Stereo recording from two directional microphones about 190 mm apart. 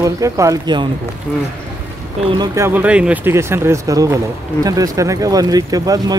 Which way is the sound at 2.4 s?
15° right (ahead or behind).